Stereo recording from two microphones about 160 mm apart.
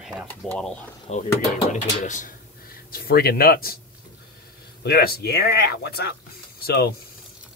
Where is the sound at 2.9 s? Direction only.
70° left (ahead or behind).